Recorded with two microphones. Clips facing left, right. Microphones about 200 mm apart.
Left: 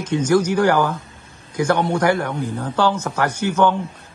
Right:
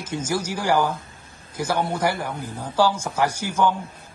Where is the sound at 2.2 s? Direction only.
65° left (ahead or behind).